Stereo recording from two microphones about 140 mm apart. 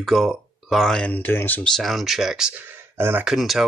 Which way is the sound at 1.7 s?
Centre (ahead or behind).